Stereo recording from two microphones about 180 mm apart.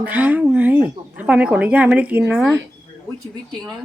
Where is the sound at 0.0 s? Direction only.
10° right (ahead or behind).